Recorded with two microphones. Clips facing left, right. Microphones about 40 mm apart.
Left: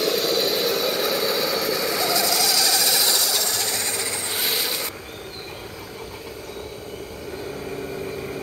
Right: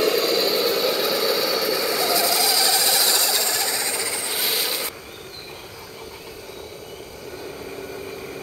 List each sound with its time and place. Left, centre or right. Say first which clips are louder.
0.0 s vehicle: right 2 dB; right
0.3 s a sound: right 1 dB; left
1.3 s a sound: right 1 dB; centre
1.8 s sewing machine: right 1 dB; centre; by 3.1 s right
3.2 s engine: right 1 dB; right
4.1 s rub: even; centre